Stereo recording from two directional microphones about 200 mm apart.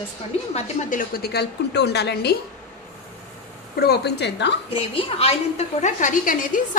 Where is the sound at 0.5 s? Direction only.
40° left (ahead or behind); by 2.3 s 55° left (ahead or behind).